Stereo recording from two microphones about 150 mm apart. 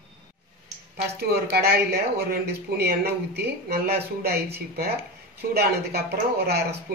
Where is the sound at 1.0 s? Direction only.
90° right.